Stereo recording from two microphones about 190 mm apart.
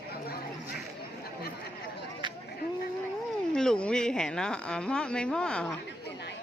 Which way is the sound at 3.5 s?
5° left (ahead or behind).